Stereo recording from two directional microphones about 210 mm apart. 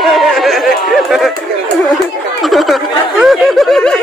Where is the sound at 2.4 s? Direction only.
Centre (ahead or behind).